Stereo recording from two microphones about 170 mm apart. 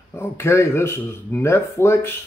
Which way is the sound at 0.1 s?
15° left (ahead or behind).